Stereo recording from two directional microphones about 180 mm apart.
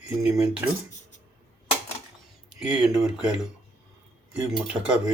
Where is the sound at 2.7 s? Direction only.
5° right (ahead or behind).